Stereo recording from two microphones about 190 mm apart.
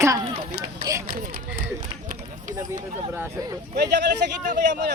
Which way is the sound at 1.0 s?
50° right (ahead or behind).